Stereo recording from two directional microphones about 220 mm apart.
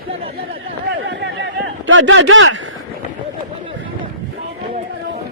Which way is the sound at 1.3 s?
60° right (ahead or behind).